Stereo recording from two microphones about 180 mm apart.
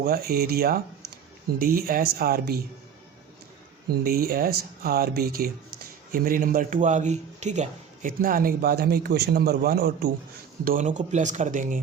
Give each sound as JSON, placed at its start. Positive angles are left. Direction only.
{"t": 0.0, "sound": "speech", "side_deg": -60}
{"t": 4.0, "sound": "speech", "side_deg": -55}
{"t": 10.6, "sound": "speech", "side_deg": -50}